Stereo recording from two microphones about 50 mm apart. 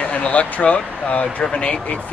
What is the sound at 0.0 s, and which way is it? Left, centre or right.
Speech, left.